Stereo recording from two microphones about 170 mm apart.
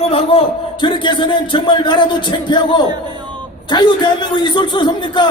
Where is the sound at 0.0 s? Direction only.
35° left (ahead or behind).